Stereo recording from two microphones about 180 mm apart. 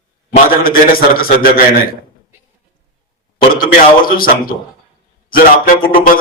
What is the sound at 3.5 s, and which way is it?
Speech, 50° left (ahead or behind).